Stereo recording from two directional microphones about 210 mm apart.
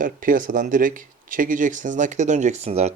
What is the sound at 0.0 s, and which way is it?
Speech, 40° right (ahead or behind).